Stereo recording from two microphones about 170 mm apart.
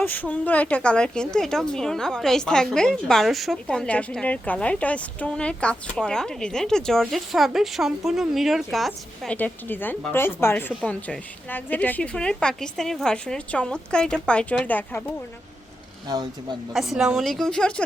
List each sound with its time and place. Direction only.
0.0 s speech: 10° left (ahead or behind)
16.0 s speech: 25° right (ahead or behind)
16.7 s speech: centre (ahead or behind)